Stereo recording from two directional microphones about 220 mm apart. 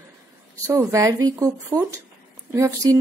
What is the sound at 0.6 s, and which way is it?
Speech, 15° right (ahead or behind).